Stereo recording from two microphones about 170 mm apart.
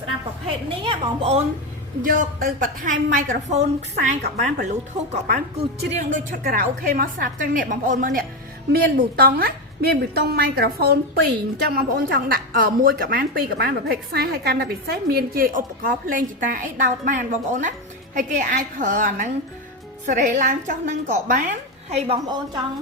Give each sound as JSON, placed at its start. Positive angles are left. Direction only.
{"t": 0.9, "sound": "a woman's voice", "side_deg": -35}
{"t": 2.0, "sound": "a woman's voice", "side_deg": -50}
{"t": 5.9, "sound": "a woman's voice", "side_deg": -45}